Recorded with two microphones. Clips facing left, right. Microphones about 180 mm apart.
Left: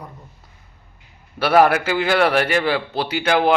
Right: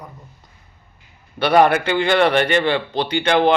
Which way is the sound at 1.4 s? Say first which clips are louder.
Right 1 dB; 5° left (ahead or behind).